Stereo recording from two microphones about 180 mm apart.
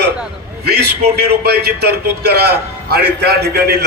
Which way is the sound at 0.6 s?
60° right (ahead or behind).